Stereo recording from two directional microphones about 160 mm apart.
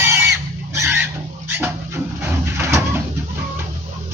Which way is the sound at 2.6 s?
15° right (ahead or behind).